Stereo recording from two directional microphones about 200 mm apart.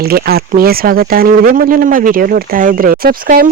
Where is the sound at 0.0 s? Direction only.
50° right (ahead or behind).